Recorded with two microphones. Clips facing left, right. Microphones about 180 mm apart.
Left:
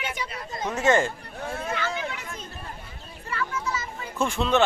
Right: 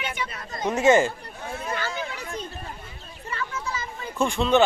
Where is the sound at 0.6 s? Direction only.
15° right (ahead or behind).